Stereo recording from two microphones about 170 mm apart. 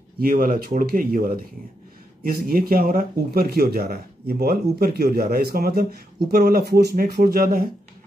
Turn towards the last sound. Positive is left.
turn(degrees=-60)  # may be behind; listen again after turning